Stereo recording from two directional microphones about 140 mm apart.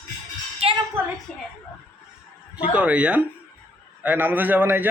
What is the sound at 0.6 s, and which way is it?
Speech, 45° right (ahead or behind).